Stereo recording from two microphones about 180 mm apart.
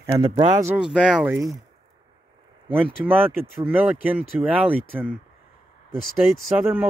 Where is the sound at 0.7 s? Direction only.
5° right (ahead or behind).